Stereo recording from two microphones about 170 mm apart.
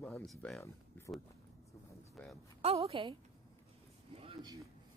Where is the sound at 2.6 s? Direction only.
35° right (ahead or behind).